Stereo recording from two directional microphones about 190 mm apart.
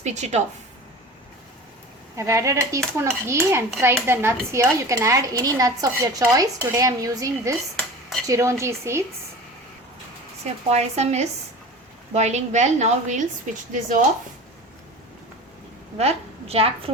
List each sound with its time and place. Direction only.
0.0 s a woman's voice: 35° right (ahead or behind)
2.1 s dishes: 15° right (ahead or behind)
10.4 s a woman's voice: 35° right (ahead or behind)
16.0 s a woman's voice: 30° right (ahead or behind)